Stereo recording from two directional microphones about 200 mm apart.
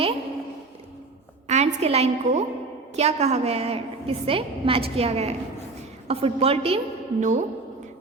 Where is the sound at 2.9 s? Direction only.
35° right (ahead or behind).